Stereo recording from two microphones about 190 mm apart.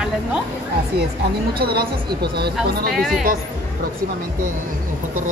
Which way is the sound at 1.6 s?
55° right (ahead or behind).